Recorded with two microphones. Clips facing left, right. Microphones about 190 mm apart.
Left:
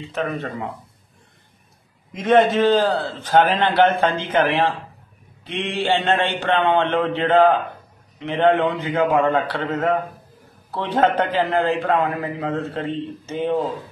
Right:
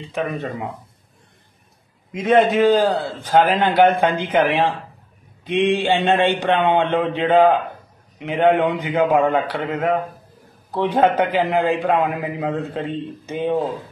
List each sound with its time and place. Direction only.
0.2 s a man's voice: 10° right (ahead or behind)
2.1 s a man's voice: 10° right (ahead or behind)